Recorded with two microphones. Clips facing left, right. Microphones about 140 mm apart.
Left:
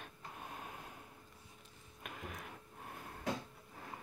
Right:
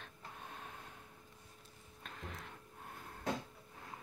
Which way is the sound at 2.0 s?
10° left (ahead or behind).